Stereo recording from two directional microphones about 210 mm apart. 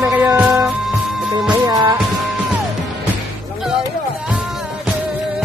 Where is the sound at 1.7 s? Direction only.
20° right (ahead or behind).